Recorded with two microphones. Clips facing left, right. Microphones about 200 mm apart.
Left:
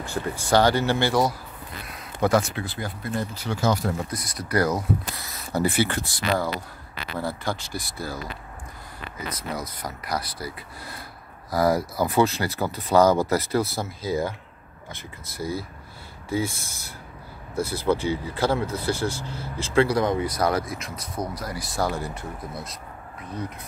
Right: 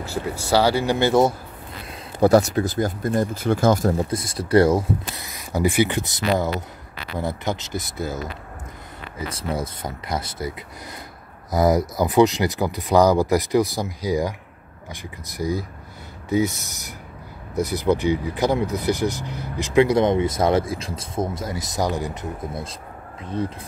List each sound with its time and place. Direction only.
0.0 s speech: 5° right (ahead or behind)
2.1 s speech: 40° right (ahead or behind)
4.1 s speech: 25° right (ahead or behind)
9.3 s speech: 30° right (ahead or behind)